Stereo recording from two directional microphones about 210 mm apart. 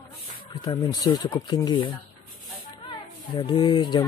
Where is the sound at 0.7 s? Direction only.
20° left (ahead or behind).